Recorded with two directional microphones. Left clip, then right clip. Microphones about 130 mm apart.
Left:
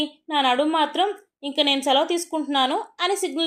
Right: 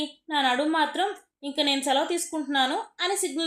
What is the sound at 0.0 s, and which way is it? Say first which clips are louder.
A woman's voice: left 4 dB; 30° left (ahead or behind).